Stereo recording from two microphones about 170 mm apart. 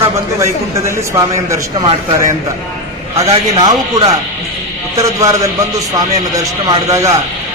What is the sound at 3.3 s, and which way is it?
Speech, 30° right (ahead or behind).